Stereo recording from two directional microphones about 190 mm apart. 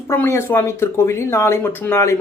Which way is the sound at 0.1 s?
15° left (ahead or behind).